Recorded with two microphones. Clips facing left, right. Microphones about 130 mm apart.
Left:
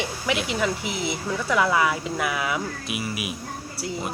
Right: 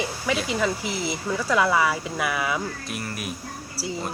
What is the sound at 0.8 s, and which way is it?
Speech, 65° left (ahead or behind).